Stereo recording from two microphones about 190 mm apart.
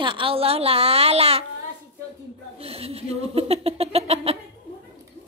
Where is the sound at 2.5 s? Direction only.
30° right (ahead or behind).